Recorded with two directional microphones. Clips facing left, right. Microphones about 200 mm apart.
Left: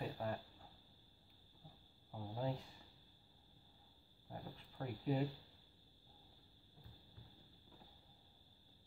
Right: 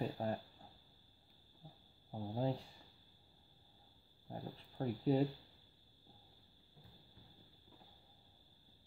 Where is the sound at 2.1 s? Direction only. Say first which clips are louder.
Right 5 dB; 30° right (ahead or behind).